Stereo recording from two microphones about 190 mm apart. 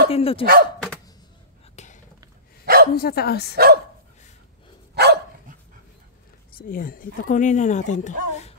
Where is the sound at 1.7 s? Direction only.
40° left (ahead or behind).